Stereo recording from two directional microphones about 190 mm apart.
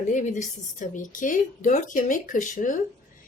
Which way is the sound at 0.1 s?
40° left (ahead or behind).